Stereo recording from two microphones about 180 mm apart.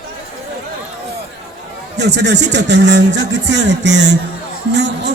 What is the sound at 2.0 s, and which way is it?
Speech, 75° right (ahead or behind).